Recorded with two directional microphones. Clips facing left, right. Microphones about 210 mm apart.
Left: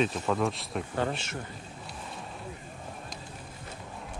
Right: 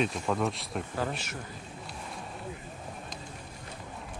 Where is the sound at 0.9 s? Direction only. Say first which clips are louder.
Left 4 dB; 25° left (ahead or behind).